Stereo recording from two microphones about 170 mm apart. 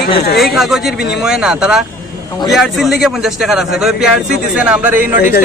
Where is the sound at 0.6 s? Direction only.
Centre (ahead or behind).